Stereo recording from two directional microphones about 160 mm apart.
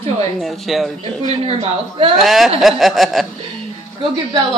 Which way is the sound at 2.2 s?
Centre (ahead or behind).